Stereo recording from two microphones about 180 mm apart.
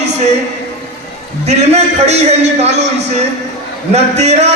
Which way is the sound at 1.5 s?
35° right (ahead or behind).